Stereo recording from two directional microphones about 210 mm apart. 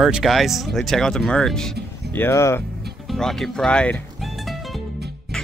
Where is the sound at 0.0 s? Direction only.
Centre (ahead or behind).